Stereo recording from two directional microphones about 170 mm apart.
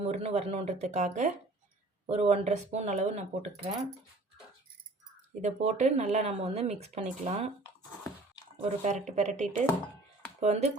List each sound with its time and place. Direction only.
0.0 s speech: 40° right (ahead or behind)
5.4 s speech: 40° right (ahead or behind)
8.8 s speech: 45° right (ahead or behind)